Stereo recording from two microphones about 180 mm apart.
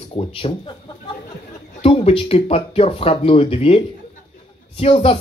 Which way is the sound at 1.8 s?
30° left (ahead or behind).